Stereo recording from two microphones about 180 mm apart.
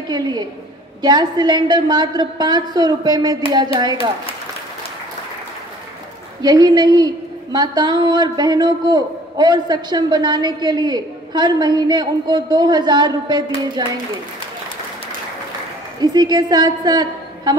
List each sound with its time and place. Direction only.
0.1 s a man's voice: 25° right (ahead or behind)
6.4 s a man's voice: 20° right (ahead or behind)
16.0 s a man's voice: 25° right (ahead or behind)